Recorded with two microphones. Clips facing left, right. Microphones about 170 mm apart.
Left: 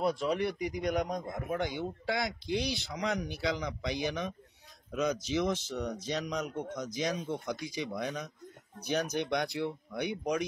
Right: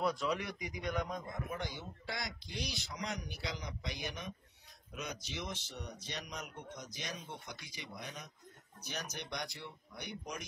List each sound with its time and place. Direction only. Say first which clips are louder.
0.0 s speech: left 5 dB; 25° left (ahead or behind)
0.7 s speech: left 7 dB; 40° left (ahead or behind)
1.5 s speech: left 9 dB; 65° left (ahead or behind); by 8.2 s 90° left
8.7 s speech: left 13 dB; 65° left (ahead or behind)